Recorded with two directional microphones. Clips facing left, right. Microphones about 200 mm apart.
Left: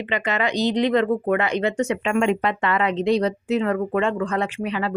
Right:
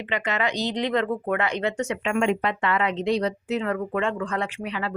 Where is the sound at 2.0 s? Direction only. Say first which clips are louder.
Left 1 dB; 45° left (ahead or behind).